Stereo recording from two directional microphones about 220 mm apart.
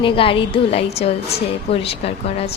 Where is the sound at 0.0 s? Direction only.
25° left (ahead or behind).